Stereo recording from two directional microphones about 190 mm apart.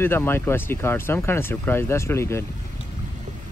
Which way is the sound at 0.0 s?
10° left (ahead or behind).